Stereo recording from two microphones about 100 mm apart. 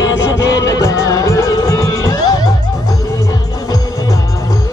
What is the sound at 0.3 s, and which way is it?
Music, 35° left (ahead or behind).